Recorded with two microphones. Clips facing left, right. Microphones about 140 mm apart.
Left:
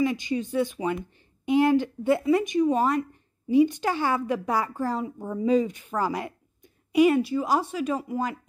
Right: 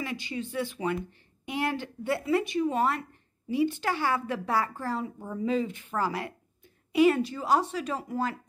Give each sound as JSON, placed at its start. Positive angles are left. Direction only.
{"t": 0.0, "sound": "a woman's voice", "side_deg": 20}